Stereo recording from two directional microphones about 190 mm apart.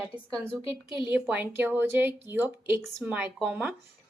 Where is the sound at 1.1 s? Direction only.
10° right (ahead or behind).